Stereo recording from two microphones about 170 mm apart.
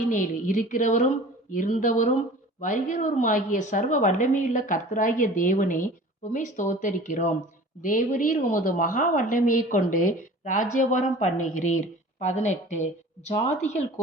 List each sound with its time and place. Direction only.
0.1 s a woman's voice: 50° left (ahead or behind)